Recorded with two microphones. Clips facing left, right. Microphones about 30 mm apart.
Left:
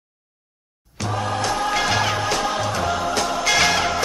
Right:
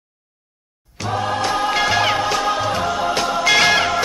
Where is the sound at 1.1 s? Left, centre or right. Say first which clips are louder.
Right 3 dB; centre.